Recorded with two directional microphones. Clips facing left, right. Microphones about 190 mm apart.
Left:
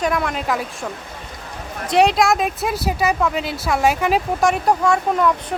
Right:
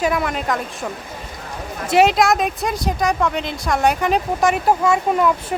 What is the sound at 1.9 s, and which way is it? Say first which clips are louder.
Speech: right 1 dB; 5° right (ahead or behind).